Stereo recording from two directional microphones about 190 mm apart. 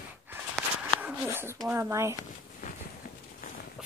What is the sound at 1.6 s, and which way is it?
Speech, 15° right (ahead or behind).